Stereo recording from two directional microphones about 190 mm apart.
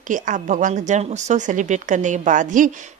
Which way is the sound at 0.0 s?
40° right (ahead or behind).